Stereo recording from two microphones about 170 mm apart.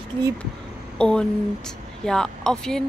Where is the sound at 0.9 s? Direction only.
5° left (ahead or behind).